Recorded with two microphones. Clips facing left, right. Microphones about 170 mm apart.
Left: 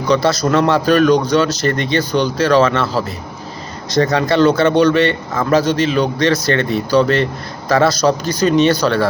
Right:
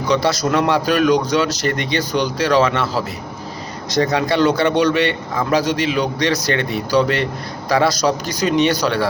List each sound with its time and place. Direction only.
0.0 s a man's voice: 20° right (ahead or behind)
3.9 s a man's voice: 20° right (ahead or behind)